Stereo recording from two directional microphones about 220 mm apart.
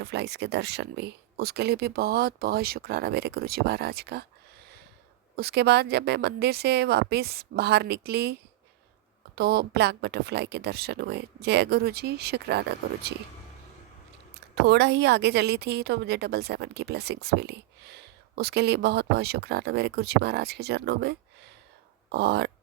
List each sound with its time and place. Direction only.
0.0 s a woman's voice: 50° right (ahead or behind)
5.4 s a woman's voice: 45° right (ahead or behind)
14.5 s a woman's voice: 50° right (ahead or behind)